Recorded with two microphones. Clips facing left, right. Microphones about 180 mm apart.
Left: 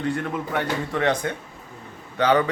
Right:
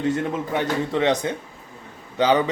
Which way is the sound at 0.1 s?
20° right (ahead or behind).